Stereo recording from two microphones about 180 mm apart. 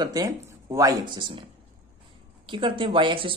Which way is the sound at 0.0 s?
20° right (ahead or behind).